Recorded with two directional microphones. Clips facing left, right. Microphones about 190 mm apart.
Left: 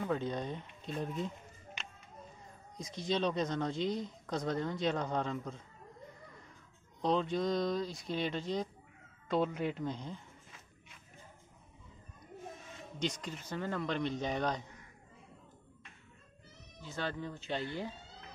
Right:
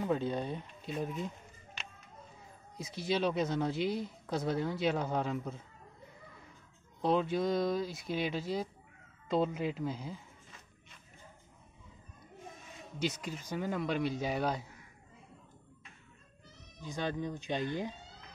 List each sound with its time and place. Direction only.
0.0 s speech: 10° right (ahead or behind)
2.8 s speech: 5° right (ahead or behind)
7.0 s speech: 5° right (ahead or behind)
13.0 s speech: 5° right (ahead or behind)
16.8 s speech: 15° right (ahead or behind)